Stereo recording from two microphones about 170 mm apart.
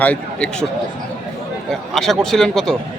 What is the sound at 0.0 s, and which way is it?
Speech, 10° left (ahead or behind).